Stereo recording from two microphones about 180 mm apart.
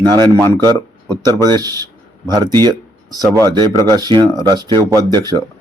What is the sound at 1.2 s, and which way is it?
A man's voice, 20° right (ahead or behind).